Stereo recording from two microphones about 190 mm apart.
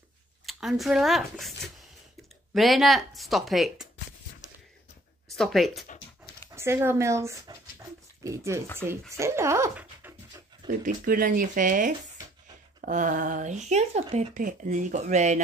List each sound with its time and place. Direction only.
0.5 s speech: centre (ahead or behind)
2.5 s speech: centre (ahead or behind)
5.3 s speech: centre (ahead or behind)
6.5 s speech: 15° right (ahead or behind)
10.9 s speech: 50° right (ahead or behind)